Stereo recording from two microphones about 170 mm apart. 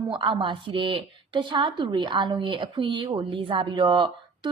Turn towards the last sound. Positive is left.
turn(degrees=-30)  # may be behind; listen again after turning